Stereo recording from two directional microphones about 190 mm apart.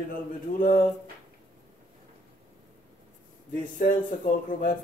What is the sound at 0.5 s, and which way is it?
Speech, 45° left (ahead or behind).